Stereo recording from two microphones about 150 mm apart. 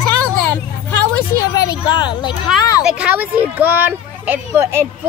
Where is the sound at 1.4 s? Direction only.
25° left (ahead or behind).